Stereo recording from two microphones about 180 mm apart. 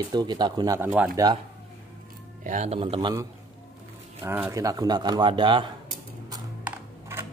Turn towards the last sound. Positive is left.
turn(degrees=-15)  # may be behind; listen again after turning